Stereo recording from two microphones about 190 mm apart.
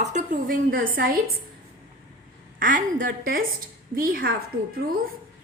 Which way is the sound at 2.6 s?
45° right (ahead or behind).